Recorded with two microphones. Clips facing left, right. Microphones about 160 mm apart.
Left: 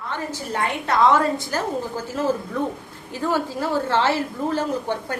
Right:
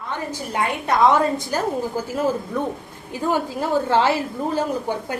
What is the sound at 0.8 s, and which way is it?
A woman's voice, 15° right (ahead or behind).